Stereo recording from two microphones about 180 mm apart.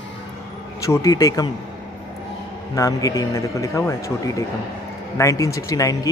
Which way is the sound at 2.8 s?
20° left (ahead or behind).